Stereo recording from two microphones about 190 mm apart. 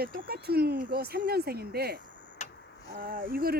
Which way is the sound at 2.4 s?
40° left (ahead or behind).